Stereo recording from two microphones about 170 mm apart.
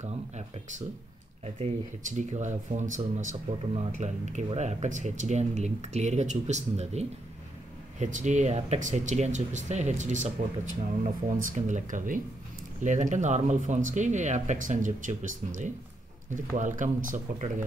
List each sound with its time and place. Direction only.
1.4 s speech: 40° right (ahead or behind)